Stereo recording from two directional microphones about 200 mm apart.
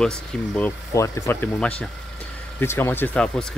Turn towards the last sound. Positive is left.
turn(degrees=5)  # may be behind; listen again after turning